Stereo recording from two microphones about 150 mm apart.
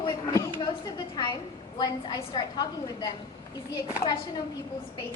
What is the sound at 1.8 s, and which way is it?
A woman's voice, 30° left (ahead or behind).